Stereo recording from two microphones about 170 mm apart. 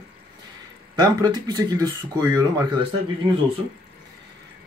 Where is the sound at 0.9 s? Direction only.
25° right (ahead or behind).